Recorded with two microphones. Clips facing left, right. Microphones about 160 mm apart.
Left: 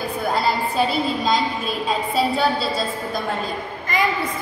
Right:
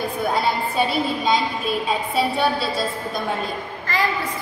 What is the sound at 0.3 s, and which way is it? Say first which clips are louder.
A woman's voice: left 2 dB; centre (ahead or behind).